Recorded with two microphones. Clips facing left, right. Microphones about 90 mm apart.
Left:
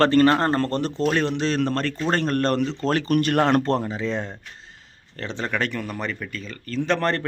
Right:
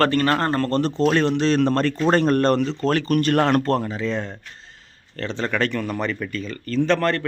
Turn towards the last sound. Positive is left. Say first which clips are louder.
# right 2 dB
turn(degrees=25)  # may be behind; listen again after turning